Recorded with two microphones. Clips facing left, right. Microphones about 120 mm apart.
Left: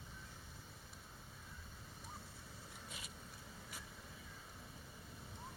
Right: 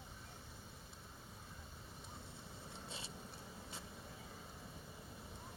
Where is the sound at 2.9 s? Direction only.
30° right (ahead or behind).